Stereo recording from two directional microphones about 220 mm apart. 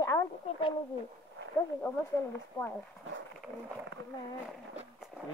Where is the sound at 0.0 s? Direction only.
20° left (ahead or behind).